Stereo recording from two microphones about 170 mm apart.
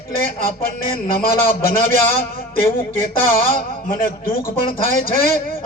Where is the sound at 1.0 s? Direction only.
65° left (ahead or behind).